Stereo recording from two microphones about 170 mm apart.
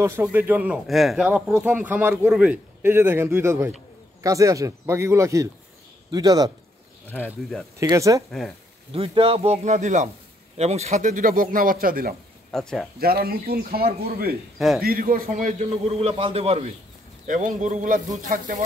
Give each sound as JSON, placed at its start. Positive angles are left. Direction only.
{"t": 0.0, "sound": "speech", "side_deg": -15}
{"t": 7.2, "sound": "speech", "side_deg": 0}
{"t": 7.8, "sound": "speech", "side_deg": -20}
{"t": 8.3, "sound": "speech", "side_deg": 0}
{"t": 8.9, "sound": "a man's voice", "side_deg": -35}
{"t": 12.4, "sound": "speech", "side_deg": 5}
{"t": 13.0, "sound": "a man's voice", "side_deg": -60}
{"t": 15.8, "sound": "speech", "side_deg": -35}
{"t": 17.3, "sound": "speech", "side_deg": -50}